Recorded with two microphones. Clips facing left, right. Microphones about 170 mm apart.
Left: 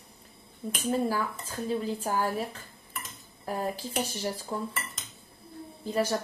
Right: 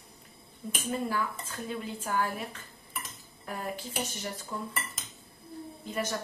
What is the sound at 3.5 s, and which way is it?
A woman's voice, 35° left (ahead or behind).